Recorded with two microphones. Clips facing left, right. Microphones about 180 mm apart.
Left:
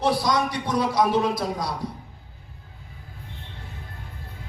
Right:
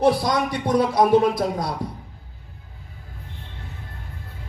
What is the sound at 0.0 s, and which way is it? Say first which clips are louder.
A man's voice: right 3 dB; 55° right (ahead or behind).